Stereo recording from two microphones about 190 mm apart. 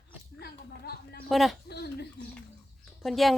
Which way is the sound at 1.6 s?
60° left (ahead or behind).